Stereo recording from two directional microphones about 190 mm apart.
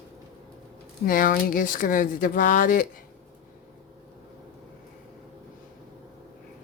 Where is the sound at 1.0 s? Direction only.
45° left (ahead or behind).